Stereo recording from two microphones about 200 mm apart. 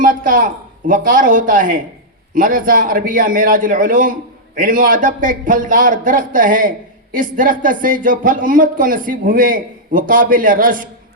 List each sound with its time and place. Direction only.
0.0 s a man's voice: 40° right (ahead or behind)